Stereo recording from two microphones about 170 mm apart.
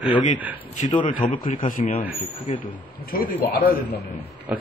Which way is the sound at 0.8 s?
55° left (ahead or behind).